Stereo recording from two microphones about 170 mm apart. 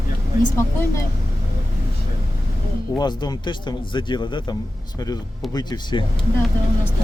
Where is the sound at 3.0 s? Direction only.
25° left (ahead or behind).